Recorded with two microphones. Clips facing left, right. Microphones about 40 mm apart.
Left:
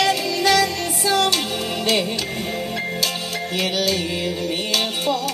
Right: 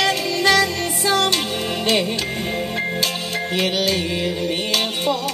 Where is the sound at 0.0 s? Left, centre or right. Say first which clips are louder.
Right 1 dB; right.